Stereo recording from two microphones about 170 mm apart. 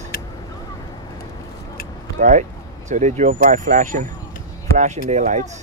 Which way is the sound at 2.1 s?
50° right (ahead or behind).